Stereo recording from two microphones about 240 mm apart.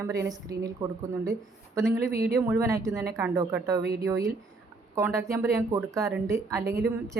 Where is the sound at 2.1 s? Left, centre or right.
Right.